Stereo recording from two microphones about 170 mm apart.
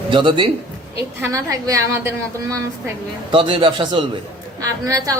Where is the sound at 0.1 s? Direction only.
30° right (ahead or behind).